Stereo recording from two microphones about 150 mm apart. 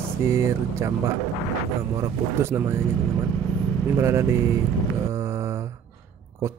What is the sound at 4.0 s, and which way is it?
Speech, 20° right (ahead or behind).